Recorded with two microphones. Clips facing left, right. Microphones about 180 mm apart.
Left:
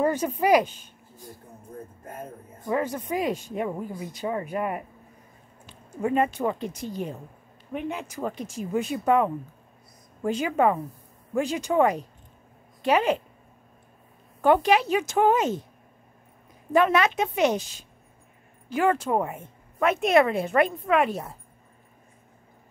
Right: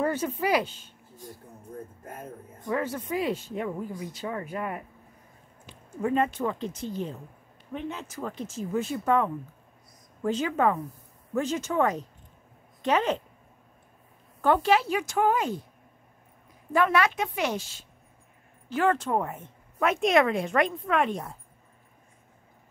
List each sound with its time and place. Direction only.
0.0 s speech: 15° left (ahead or behind)
2.7 s speech: 15° left (ahead or behind)
5.9 s speech: 10° left (ahead or behind)
14.4 s speech: 15° left (ahead or behind)
16.7 s a woman's voice: 20° left (ahead or behind); by 21.4 s 5° left (ahead or behind)